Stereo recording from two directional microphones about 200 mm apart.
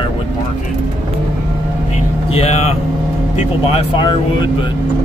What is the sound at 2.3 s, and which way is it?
Speech, 30° left (ahead or behind).